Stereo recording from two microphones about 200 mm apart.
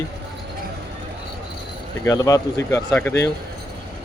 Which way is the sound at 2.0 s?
15° left (ahead or behind).